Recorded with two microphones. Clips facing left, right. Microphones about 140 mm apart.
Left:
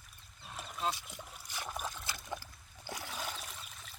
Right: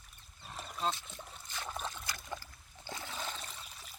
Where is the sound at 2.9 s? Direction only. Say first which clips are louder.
Left 1 dB; 15° left (ahead or behind).